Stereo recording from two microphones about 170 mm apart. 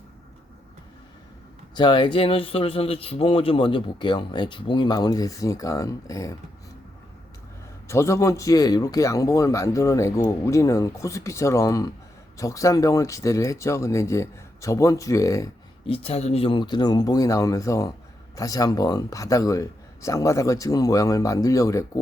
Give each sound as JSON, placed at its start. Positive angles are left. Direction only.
{"t": 1.7, "sound": "speech", "side_deg": 25}
{"t": 7.9, "sound": "speech", "side_deg": 15}
{"t": 15.9, "sound": "speech", "side_deg": 35}